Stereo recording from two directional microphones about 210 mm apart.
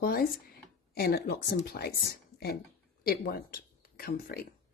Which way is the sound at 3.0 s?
45° left (ahead or behind).